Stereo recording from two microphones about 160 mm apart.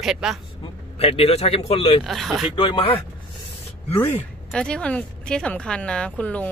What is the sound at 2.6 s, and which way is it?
Speech, 30° left (ahead or behind).